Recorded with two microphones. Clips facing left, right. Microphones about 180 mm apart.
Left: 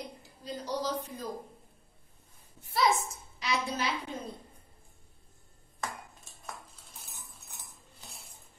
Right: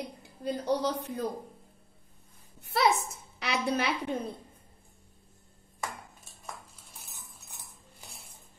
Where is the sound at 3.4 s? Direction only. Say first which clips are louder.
Right 3 dB; 60° right (ahead or behind).